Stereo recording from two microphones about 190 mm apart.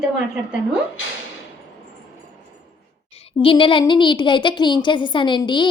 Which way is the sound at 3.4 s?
25° left (ahead or behind).